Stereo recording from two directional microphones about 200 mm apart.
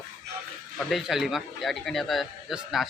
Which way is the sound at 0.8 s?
Centre (ahead or behind).